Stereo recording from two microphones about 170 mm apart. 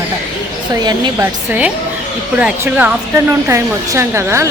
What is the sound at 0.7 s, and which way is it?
Speech, 20° right (ahead or behind).